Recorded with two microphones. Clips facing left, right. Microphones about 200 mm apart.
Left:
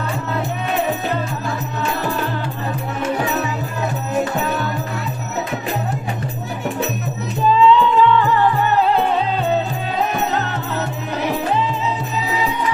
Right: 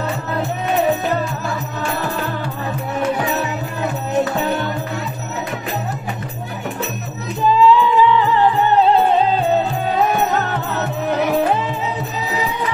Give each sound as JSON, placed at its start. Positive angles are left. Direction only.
{"t": 7.6, "sound": "music", "side_deg": -5}